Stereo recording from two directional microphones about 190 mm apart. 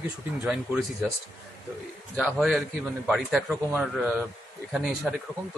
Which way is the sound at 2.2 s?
Centre (ahead or behind).